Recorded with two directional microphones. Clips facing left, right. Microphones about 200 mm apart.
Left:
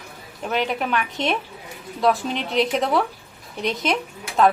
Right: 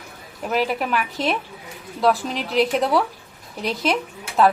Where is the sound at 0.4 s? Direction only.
5° right (ahead or behind).